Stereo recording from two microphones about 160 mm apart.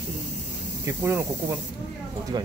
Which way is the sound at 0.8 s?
15° right (ahead or behind).